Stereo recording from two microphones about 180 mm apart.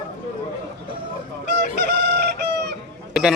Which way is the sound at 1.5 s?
65° right (ahead or behind).